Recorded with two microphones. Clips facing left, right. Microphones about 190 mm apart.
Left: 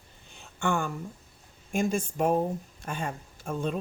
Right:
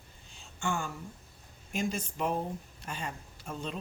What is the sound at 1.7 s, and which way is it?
Speech, 50° left (ahead or behind).